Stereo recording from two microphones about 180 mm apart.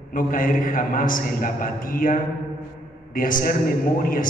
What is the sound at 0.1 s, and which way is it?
A man's voice, 50° left (ahead or behind).